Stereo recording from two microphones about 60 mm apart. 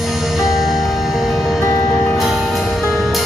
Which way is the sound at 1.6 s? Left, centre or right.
Left.